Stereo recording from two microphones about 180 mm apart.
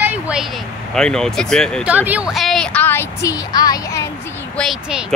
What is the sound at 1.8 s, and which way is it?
A woman's voice, 10° right (ahead or behind).